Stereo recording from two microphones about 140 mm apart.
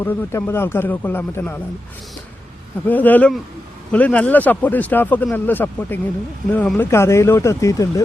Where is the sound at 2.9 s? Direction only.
10° left (ahead or behind).